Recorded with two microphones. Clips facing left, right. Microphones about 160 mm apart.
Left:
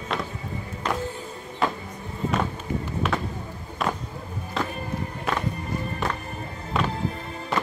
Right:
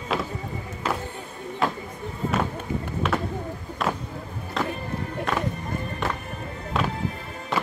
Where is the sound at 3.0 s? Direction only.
Centre (ahead or behind).